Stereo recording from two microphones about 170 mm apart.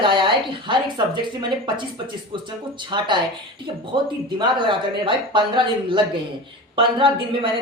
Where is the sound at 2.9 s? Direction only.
25° right (ahead or behind).